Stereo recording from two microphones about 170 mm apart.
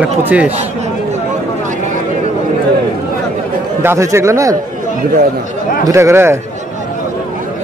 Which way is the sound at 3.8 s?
15° right (ahead or behind).